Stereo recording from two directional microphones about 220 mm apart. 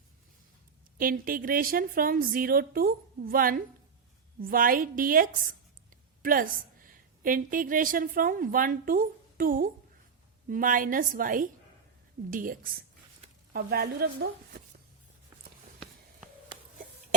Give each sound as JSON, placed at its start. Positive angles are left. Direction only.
{"t": 0.9, "sound": "a woman's voice", "side_deg": -40}